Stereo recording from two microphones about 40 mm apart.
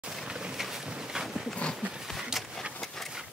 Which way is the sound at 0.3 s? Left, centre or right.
Centre.